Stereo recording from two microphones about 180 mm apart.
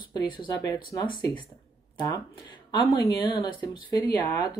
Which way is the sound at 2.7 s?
25° left (ahead or behind).